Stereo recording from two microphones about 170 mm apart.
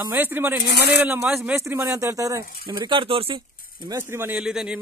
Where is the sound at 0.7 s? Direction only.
70° left (ahead or behind).